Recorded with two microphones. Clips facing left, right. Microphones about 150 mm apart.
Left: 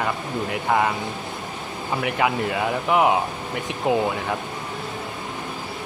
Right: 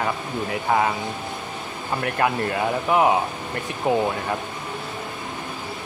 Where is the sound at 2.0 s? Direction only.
5° left (ahead or behind).